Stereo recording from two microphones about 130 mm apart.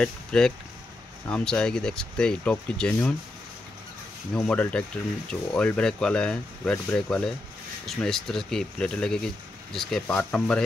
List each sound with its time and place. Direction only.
0.0 s speech: 5° left (ahead or behind)
4.3 s speech: 5° left (ahead or behind)